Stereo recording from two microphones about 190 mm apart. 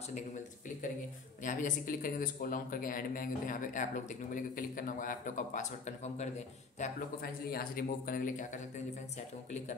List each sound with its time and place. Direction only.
1.4 s speech: 40° left (ahead or behind)
6.8 s speech: 50° left (ahead or behind)